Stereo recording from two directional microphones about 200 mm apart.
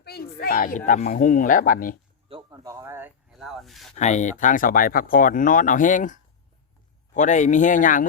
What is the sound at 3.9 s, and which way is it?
Speech, 35° left (ahead or behind).